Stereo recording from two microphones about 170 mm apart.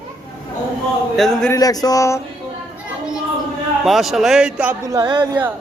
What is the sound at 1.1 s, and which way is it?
Speech, centre (ahead or behind).